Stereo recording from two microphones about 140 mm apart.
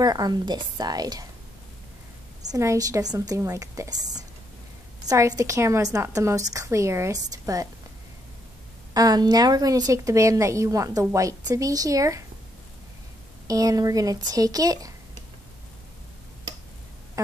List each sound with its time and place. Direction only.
0.0 s a woman's voice: 30° right (ahead or behind)
2.5 s a woman's voice: 20° right (ahead or behind)
8.9 s a woman's voice: 25° right (ahead or behind)
13.5 s a woman's voice: 25° right (ahead or behind)